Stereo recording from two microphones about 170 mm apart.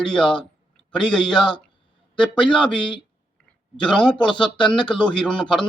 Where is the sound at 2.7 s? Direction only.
30° left (ahead or behind).